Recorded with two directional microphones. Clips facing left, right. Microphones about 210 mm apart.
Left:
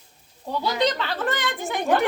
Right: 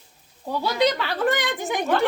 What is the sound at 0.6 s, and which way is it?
A woman's voice, 5° right (ahead or behind).